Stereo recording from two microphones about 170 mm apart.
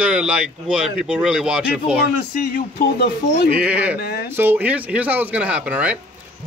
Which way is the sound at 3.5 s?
10° right (ahead or behind).